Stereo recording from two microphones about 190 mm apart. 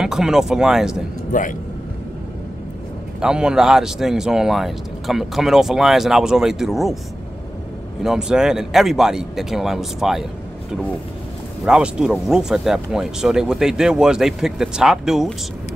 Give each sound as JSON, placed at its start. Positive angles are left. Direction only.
{"t": 0.0, "sound": "speech", "side_deg": -5}
{"t": 1.3, "sound": "speech", "side_deg": 45}
{"t": 3.2, "sound": "speech", "side_deg": -5}
{"t": 8.0, "sound": "speech", "side_deg": -5}
{"t": 11.6, "sound": "speech", "side_deg": 0}